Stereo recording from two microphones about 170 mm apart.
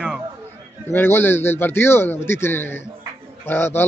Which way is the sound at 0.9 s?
15° left (ahead or behind).